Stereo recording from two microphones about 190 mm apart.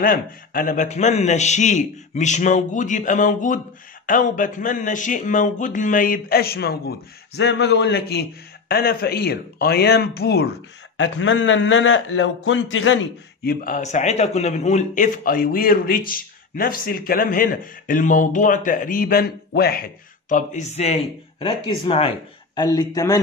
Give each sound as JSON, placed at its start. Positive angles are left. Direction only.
{"t": 0.0, "sound": "a man's voice", "side_deg": 50}
{"t": 11.0, "sound": "speech", "side_deg": 90}
{"t": 13.4, "sound": "a man's voice", "side_deg": 50}